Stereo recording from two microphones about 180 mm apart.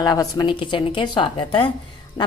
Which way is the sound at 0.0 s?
20° left (ahead or behind).